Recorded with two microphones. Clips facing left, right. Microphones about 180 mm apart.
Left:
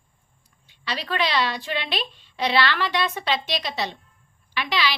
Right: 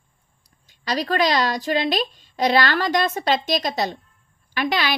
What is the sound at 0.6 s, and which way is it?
A woman's voice, 40° right (ahead or behind).